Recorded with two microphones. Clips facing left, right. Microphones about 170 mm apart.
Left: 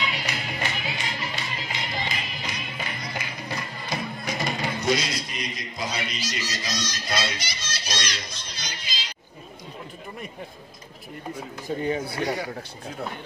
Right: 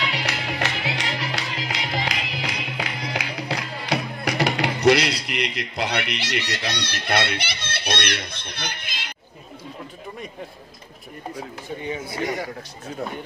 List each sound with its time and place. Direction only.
0.0 s music: 70° right (ahead or behind)